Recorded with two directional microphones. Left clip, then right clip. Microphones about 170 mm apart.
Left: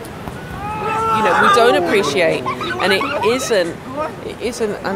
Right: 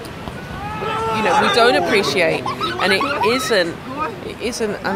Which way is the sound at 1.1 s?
Centre (ahead or behind).